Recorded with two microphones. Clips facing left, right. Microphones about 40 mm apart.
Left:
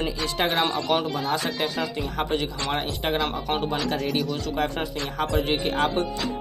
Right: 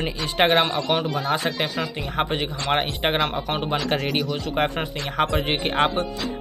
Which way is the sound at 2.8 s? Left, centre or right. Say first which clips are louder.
Right 3 dB; right.